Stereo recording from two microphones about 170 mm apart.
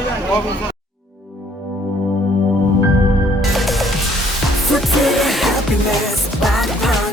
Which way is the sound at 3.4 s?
Centre (ahead or behind).